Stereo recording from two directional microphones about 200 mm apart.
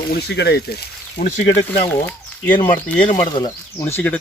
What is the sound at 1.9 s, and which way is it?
Speech, 10° left (ahead or behind).